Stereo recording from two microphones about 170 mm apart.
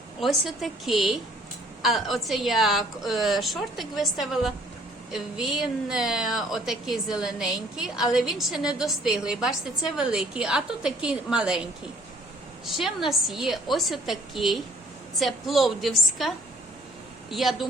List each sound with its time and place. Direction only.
0.2 s a woman's voice: centre (ahead or behind)